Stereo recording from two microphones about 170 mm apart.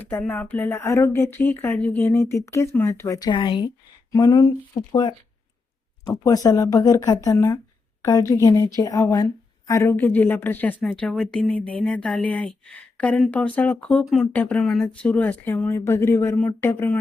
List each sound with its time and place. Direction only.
0.0 s a woman's voice: 10° left (ahead or behind)